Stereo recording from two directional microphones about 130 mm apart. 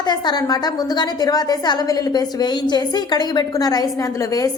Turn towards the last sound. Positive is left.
turn(degrees=25)  # may be behind; listen again after turning